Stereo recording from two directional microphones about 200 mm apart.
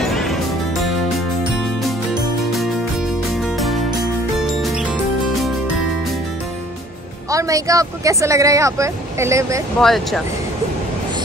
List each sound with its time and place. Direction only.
0.1 s music: centre (ahead or behind)
3.5 s music: centre (ahead or behind)
7.2 s speech: 15° right (ahead or behind)
9.8 s speech: centre (ahead or behind)